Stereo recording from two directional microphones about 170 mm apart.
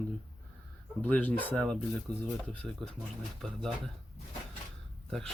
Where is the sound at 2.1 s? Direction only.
25° right (ahead or behind).